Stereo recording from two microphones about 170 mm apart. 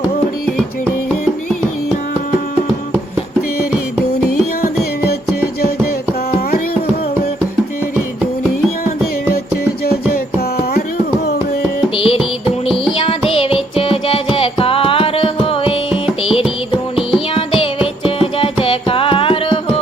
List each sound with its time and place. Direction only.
4.6 s music: 65° left (ahead or behind)
9.8 s music: 65° left (ahead or behind)
11.9 s music: 30° left (ahead or behind)